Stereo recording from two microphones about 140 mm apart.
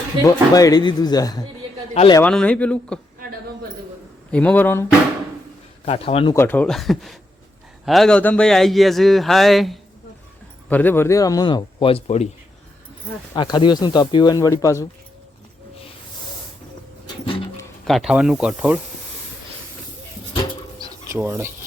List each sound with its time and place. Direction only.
0.3 s speech: 25° left (ahead or behind)
2.2 s speech: 10° left (ahead or behind)
4.3 s speech: 10° left (ahead or behind)
5.8 s a man's voice: 45° left (ahead or behind)
6.3 s speech: 15° left (ahead or behind)
6.7 s speech: centre (ahead or behind)
10.7 s speech: 10° left (ahead or behind); by 12.3 s 50° left (ahead or behind)
13.3 s speech: 35° left (ahead or behind)
17.8 s speech: centre (ahead or behind)
21.1 s speech: 15° right (ahead or behind)